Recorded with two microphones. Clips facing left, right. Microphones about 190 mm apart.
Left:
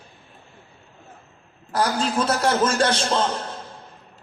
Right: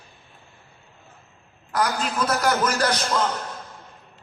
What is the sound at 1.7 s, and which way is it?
A man's voice, 30° left (ahead or behind).